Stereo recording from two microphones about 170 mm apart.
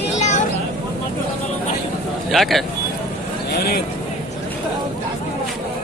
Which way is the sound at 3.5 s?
70° left (ahead or behind).